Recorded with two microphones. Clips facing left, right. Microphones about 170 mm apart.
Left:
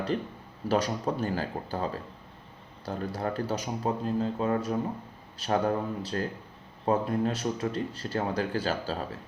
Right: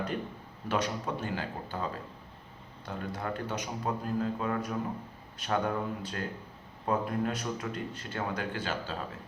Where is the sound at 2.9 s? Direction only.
35° left (ahead or behind).